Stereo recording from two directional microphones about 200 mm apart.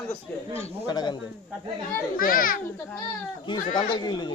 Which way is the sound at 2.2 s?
45° left (ahead or behind).